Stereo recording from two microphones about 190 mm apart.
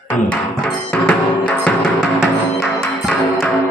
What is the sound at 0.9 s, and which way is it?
Music, 5° left (ahead or behind).